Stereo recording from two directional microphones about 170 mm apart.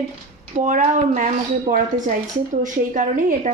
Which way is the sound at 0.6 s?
50° right (ahead or behind).